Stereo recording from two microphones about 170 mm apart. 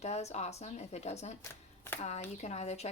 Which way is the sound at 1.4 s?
15° left (ahead or behind).